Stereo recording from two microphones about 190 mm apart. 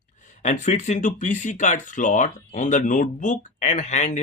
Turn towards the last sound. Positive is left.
turn(degrees=40)  # may be behind; listen again after turning